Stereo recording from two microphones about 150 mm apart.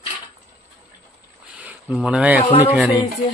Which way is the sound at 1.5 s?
10° right (ahead or behind).